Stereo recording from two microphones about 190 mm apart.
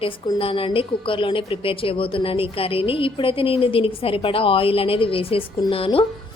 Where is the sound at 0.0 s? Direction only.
30° left (ahead or behind).